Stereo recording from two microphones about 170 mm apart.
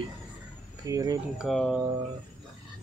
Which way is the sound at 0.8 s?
20° right (ahead or behind).